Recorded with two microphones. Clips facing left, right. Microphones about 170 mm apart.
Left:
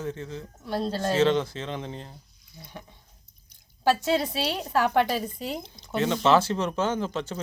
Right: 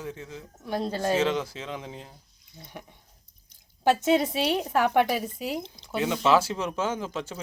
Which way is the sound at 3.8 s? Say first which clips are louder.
Right 2 dB; 20° right (ahead or behind).